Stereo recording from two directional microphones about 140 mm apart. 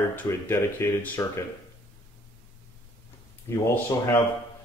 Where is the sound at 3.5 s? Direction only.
20° left (ahead or behind).